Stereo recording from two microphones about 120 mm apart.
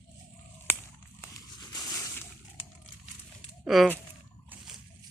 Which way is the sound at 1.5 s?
35° left (ahead or behind).